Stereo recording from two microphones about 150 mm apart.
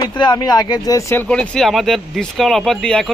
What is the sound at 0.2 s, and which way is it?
Speech, 25° left (ahead or behind).